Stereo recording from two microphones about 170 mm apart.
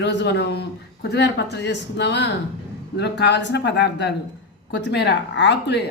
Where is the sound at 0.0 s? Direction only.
90° left.